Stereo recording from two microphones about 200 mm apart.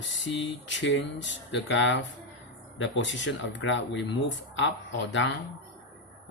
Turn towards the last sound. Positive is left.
turn(degrees=65)  # may be behind; listen again after turning